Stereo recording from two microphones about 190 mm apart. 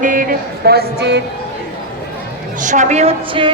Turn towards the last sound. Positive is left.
turn(degrees=-30)  # may be behind; listen again after turning